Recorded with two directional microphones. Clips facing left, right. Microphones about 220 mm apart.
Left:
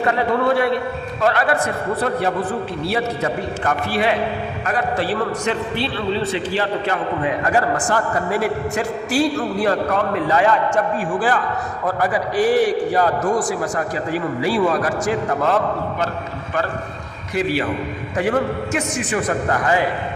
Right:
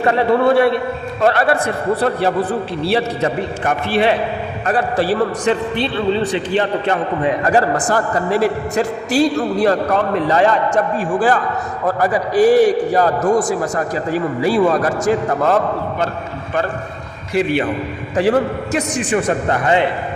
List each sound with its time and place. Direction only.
0.0 s a man's voice: 30° right (ahead or behind)
6.5 s a man's voice: 25° right (ahead or behind)
7.4 s a man's voice: 35° right (ahead or behind)
17.3 s a man's voice: 25° right (ahead or behind)